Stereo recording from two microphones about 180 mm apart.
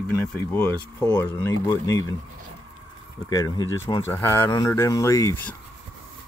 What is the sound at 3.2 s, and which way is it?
Speech, 20° left (ahead or behind).